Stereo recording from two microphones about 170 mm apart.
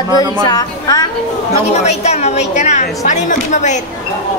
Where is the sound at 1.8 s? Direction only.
40° left (ahead or behind).